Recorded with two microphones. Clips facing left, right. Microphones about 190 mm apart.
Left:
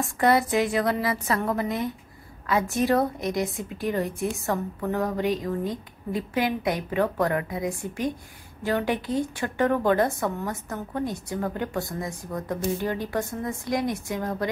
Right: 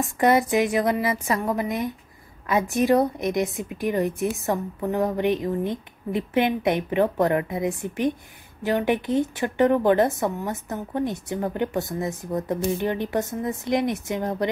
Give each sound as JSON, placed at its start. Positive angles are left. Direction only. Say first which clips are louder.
{"t": 0.0, "sound": "a woman's voice", "louder": "right 2 dB", "side_deg": -20}